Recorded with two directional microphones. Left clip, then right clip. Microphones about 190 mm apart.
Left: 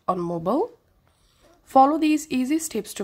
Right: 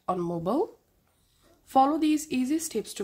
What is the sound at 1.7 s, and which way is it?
Speech, 20° left (ahead or behind).